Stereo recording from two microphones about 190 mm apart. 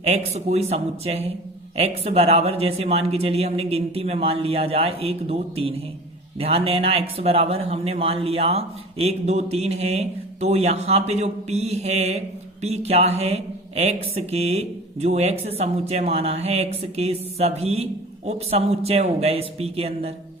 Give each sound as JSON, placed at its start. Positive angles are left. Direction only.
{"t": 0.0, "sound": "speech", "side_deg": -35}